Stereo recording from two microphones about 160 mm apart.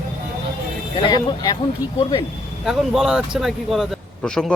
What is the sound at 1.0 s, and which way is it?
Speech, 25° left (ahead or behind).